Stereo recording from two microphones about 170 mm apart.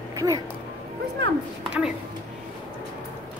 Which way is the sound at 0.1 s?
20° right (ahead or behind).